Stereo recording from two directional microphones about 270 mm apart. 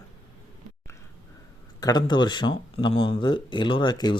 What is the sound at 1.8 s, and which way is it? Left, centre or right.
Speech, centre.